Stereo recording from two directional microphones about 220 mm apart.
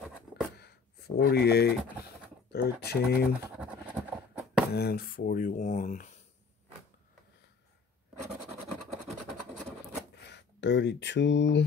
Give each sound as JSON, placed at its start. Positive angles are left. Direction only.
{"t": 1.2, "sound": "speech", "side_deg": 45}
{"t": 3.5, "sound": "a sound", "side_deg": -5}
{"t": 4.7, "sound": "speech", "side_deg": 45}
{"t": 10.2, "sound": "speech", "side_deg": 50}